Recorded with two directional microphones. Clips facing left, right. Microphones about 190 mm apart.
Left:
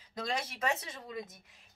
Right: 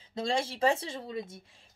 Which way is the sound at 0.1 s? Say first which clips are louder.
Right 6 dB; 25° right (ahead or behind).